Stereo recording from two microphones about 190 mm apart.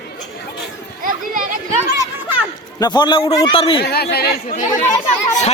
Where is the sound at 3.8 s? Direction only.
60° left (ahead or behind).